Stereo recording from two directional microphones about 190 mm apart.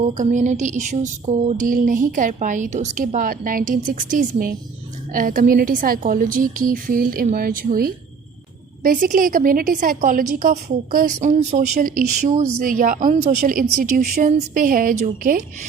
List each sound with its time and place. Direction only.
0.1 s a woman's voice: 40° right (ahead or behind)